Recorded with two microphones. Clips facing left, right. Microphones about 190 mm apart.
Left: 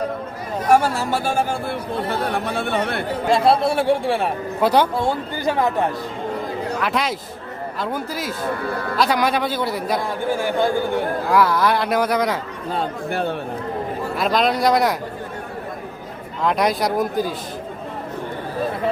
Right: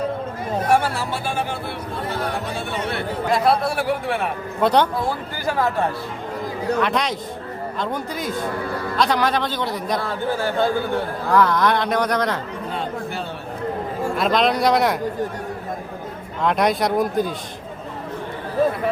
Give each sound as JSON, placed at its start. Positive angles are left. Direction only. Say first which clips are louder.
{"t": 0.7, "sound": "speech", "louder": "left 4 dB", "side_deg": 45}
{"t": 2.5, "sound": "speech", "louder": "left 4 dB", "side_deg": 60}
{"t": 3.2, "sound": "speech", "louder": "left 3 dB", "side_deg": 25}
{"t": 4.6, "sound": "a man's voice", "louder": "even", "side_deg": 5}
{"t": 4.9, "sound": "speech", "louder": "left 3 dB", "side_deg": 25}
{"t": 6.7, "sound": "a man's voice", "louder": "right 1 dB", "side_deg": 5}
{"t": 14.2, "sound": "speech", "louder": "even", "side_deg": 0}
{"t": 16.4, "sound": "speech", "louder": "even", "side_deg": 0}